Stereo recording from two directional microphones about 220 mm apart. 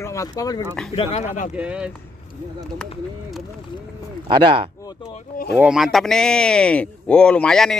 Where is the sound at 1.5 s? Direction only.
5° right (ahead or behind).